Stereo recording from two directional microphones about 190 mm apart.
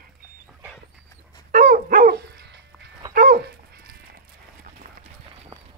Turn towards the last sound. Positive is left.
turn(degrees=-55)  # may be behind; listen again after turning